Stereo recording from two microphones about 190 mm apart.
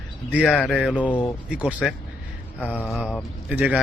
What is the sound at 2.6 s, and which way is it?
Speech, 5° left (ahead or behind).